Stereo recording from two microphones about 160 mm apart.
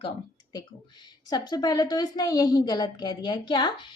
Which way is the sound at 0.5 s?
25° left (ahead or behind).